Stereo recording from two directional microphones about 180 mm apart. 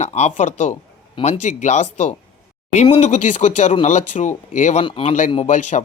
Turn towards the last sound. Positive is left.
turn(degrees=45)  # may be behind; listen again after turning